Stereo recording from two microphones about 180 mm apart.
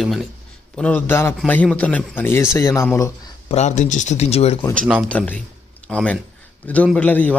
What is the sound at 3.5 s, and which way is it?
Speech, 40° left (ahead or behind).